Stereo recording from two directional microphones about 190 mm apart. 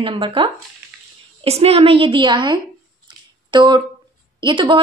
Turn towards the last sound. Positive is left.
turn(degrees=-25)  # may be behind; listen again after turning